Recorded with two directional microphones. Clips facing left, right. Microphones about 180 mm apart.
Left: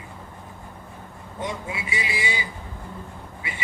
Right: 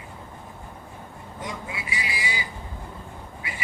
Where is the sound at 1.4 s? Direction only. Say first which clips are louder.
Left 4 dB; 25° left (ahead or behind).